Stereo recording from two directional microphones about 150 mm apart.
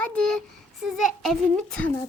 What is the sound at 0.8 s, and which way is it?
A child's voice, centre (ahead or behind).